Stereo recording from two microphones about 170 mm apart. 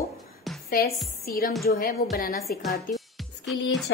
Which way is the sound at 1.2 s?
60° left (ahead or behind).